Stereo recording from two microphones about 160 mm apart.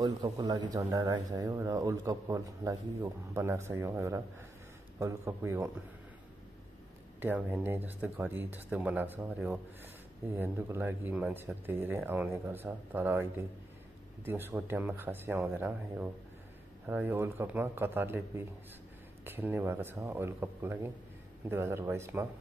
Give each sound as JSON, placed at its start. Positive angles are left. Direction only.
{"t": 0.0, "sound": "speech", "side_deg": -25}
{"t": 7.2, "sound": "speech", "side_deg": -10}